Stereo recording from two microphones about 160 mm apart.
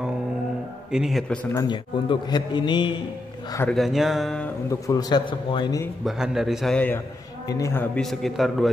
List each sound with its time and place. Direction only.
0.9 s a man's voice: centre (ahead or behind)
1.5 s a man's voice: 25° left (ahead or behind)
3.7 s a man's voice: centre (ahead or behind)
4.6 s a man's voice: 20° left (ahead or behind)
6.0 s a man's voice: 5° right (ahead or behind)
7.4 s a man's voice: 20° left (ahead or behind); by 8.6 s centre (ahead or behind)